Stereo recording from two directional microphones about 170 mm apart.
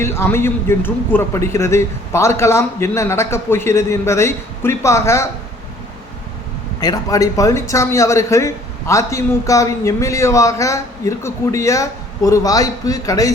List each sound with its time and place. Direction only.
0.0 s a man's voice: 15° left (ahead or behind)
6.7 s a man's voice: 20° left (ahead or behind)